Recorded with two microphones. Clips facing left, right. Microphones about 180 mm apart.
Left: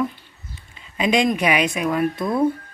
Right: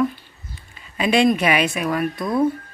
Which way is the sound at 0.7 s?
15° left (ahead or behind).